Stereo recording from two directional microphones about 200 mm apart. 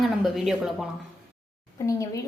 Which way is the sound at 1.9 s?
15° left (ahead or behind).